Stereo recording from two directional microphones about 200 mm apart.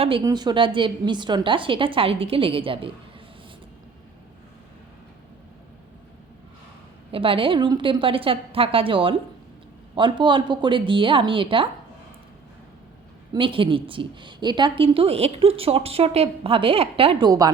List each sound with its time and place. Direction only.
0.0 s a woman's voice: 25° right (ahead or behind)
7.1 s a woman's voice: 25° right (ahead or behind)
13.3 s a woman's voice: 25° right (ahead or behind)